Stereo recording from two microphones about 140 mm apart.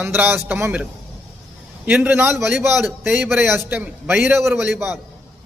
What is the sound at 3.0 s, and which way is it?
Speech, 5° right (ahead or behind).